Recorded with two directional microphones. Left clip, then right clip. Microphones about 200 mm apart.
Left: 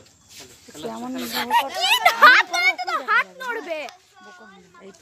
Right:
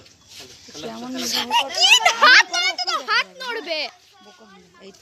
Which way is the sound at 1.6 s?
15° left (ahead or behind).